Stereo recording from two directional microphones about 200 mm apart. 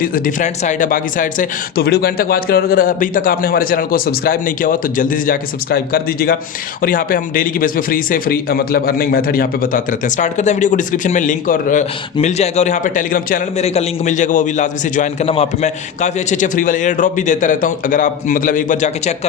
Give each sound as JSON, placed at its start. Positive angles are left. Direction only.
{"t": 0.0, "sound": "a man's voice", "side_deg": 45}